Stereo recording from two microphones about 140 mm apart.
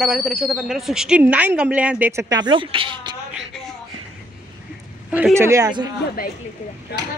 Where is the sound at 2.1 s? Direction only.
25° right (ahead or behind).